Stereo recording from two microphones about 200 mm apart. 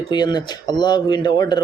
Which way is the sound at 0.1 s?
20° left (ahead or behind).